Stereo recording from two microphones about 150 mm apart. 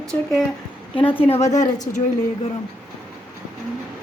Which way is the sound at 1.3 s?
50° left (ahead or behind).